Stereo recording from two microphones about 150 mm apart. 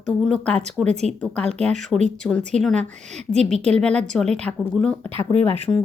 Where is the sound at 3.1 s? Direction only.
45° right (ahead or behind).